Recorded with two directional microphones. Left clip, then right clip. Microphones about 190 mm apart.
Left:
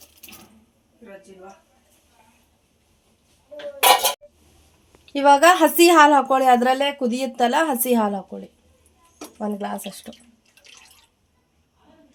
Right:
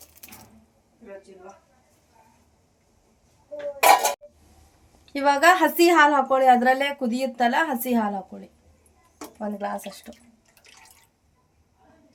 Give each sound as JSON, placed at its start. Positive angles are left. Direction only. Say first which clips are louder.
{"t": 5.1, "sound": "speech", "louder": "left 4 dB", "side_deg": 40}
{"t": 9.4, "sound": "speech", "louder": "left 2 dB", "side_deg": 45}